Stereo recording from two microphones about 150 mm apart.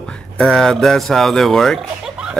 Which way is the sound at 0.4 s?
5° left (ahead or behind).